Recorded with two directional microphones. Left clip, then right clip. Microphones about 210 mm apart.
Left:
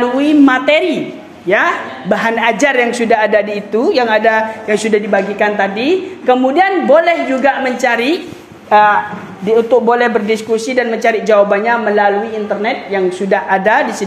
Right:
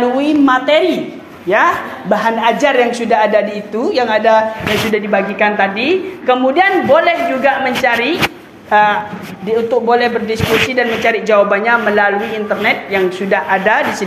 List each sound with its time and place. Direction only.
0.0 s a woman's voice: 35° left (ahead or behind)